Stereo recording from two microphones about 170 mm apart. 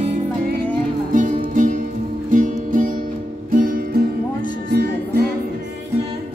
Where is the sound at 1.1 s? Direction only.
50° right (ahead or behind).